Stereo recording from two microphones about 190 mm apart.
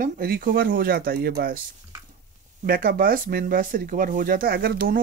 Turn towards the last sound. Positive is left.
turn(degrees=-50)  # may be behind; listen again after turning